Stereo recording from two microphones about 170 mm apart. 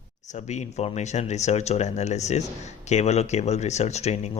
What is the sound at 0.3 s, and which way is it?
Speech, 45° left (ahead or behind).